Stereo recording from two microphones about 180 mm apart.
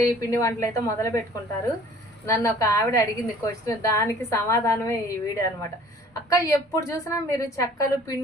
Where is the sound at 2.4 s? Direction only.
15° left (ahead or behind).